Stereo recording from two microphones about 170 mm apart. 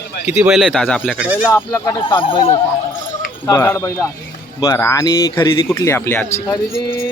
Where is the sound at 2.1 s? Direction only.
30° left (ahead or behind).